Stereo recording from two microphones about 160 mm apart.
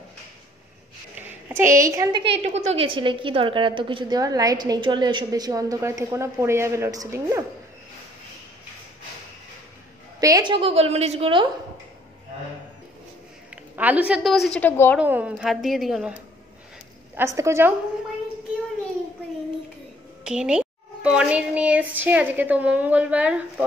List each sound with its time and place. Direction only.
1.5 s a child's voice: 15° right (ahead or behind)
2.4 s a woman's voice: 45° right (ahead or behind); by 7.4 s 20° right (ahead or behind)
10.2 s a woman's voice: 25° right (ahead or behind)
13.7 s a child's voice: 10° right (ahead or behind)
14.6 s a woman's voice: 10° left (ahead or behind)
15.0 s a woman's voice: 10° right (ahead or behind)
17.1 s a child's voice: 15° right (ahead or behind)
20.2 s a child's voice: 5° right (ahead or behind)